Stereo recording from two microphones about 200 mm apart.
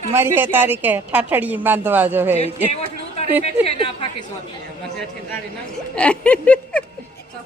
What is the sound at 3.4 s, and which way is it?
Speech, 30° left (ahead or behind).